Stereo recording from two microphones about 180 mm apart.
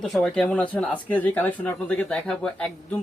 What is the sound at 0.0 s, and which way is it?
Speech, 5° left (ahead or behind).